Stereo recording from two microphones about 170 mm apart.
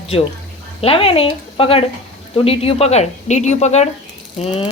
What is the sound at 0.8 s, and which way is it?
Speech, 35° left (ahead or behind).